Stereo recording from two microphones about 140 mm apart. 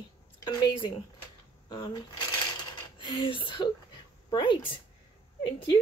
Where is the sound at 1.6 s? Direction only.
35° left (ahead or behind).